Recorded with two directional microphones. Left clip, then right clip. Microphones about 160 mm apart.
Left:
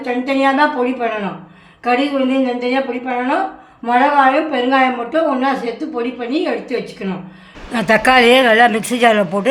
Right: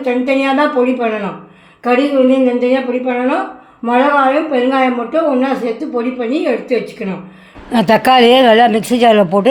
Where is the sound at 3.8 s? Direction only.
20° right (ahead or behind).